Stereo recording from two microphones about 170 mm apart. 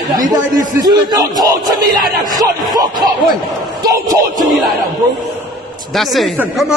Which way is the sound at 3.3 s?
20° right (ahead or behind).